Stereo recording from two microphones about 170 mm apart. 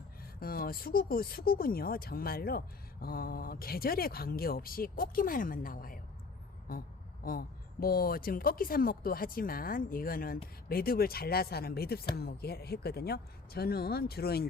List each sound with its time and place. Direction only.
0.3 s speech: 60° left (ahead or behind)